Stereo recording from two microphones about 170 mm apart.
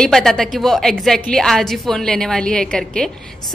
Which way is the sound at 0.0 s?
5° left (ahead or behind).